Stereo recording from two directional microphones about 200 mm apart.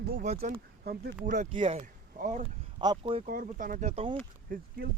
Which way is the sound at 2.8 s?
25° right (ahead or behind).